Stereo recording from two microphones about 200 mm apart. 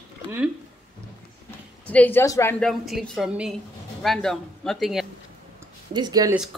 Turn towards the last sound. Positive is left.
turn(degrees=-20)  # may be behind; listen again after turning